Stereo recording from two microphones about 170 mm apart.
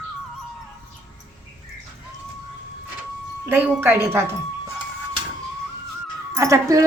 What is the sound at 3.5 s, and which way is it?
Speech, 10° right (ahead or behind).